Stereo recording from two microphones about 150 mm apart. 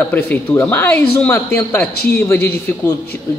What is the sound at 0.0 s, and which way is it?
A man's voice, 10° left (ahead or behind).